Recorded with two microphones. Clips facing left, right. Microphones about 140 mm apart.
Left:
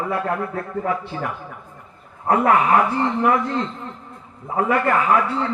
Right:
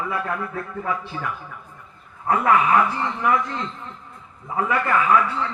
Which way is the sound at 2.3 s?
40° left (ahead or behind).